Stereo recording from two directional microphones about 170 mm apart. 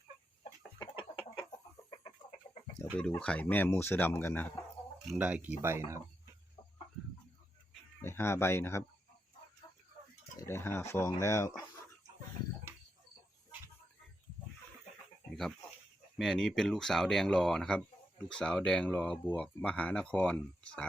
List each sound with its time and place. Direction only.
1.1 s chicken: 30° left (ahead or behind)
3.2 s speech: 10° left (ahead or behind)
5.0 s speech: 10° right (ahead or behind)
8.0 s speech: 15° left (ahead or behind)
10.3 s speech: 15° left (ahead or behind)
15.3 s dog: centre (ahead or behind)
16.1 s speech: 5° left (ahead or behind)